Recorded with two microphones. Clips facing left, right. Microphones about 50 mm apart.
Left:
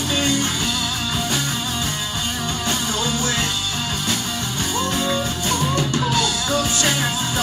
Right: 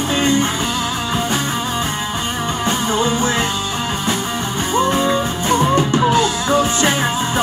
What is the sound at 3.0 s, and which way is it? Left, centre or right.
Music, right.